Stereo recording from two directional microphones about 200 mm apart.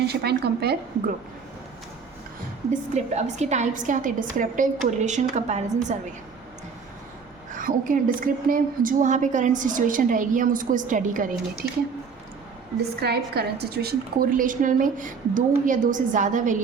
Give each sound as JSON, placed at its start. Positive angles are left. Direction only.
{"t": 0.1, "sound": "a woman's voice", "side_deg": -55}
{"t": 2.9, "sound": "a woman's voice", "side_deg": -35}
{"t": 7.5, "sound": "a woman's voice", "side_deg": -40}
{"t": 13.0, "sound": "a woman's voice", "side_deg": -55}